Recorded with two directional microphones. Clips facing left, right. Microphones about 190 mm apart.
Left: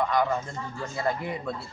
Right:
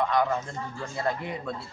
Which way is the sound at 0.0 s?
Centre (ahead or behind).